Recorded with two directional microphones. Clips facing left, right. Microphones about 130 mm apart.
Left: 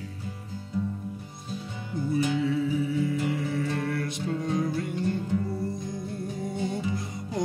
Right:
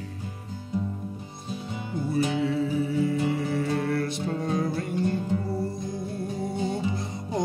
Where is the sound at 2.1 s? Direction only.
30° right (ahead or behind).